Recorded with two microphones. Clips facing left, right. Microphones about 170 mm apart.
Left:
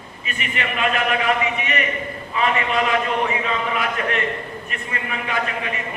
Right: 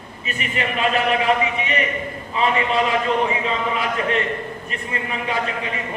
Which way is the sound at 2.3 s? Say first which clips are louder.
Right 1 dB; 30° right (ahead or behind).